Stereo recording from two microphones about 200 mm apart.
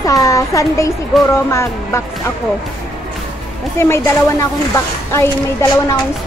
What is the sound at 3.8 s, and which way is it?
Speech, 15° left (ahead or behind).